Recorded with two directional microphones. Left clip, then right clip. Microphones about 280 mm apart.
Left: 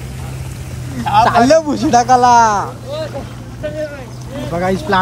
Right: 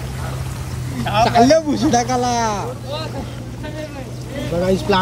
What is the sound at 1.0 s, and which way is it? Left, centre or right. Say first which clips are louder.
Speech: left 3 dB; centre.